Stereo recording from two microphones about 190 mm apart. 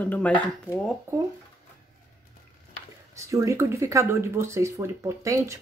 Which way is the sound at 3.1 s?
15° right (ahead or behind).